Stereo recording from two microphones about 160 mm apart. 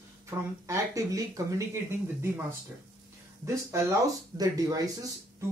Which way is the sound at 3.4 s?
20° right (ahead or behind).